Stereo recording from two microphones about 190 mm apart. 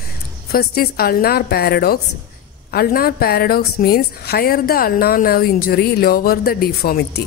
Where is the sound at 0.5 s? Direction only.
55° left (ahead or behind).